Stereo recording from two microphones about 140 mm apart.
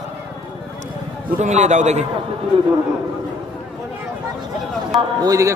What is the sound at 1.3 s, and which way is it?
Speech, 55° right (ahead or behind).